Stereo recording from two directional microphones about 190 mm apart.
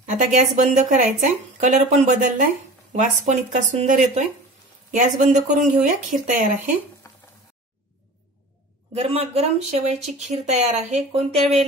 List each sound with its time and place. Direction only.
0.0 s speech: 40° right (ahead or behind)
7.0 s a sound: 15° left (ahead or behind)
8.9 s speech: 30° right (ahead or behind)